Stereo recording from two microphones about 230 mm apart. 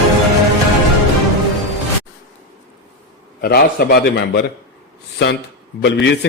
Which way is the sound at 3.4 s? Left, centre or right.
Left.